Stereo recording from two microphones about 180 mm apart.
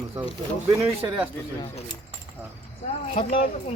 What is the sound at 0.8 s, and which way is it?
Speech, 25° right (ahead or behind).